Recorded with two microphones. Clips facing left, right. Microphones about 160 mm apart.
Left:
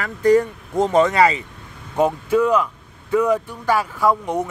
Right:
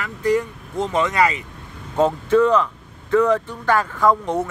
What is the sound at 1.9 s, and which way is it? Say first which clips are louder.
Speech: right 1 dB; 10° left (ahead or behind).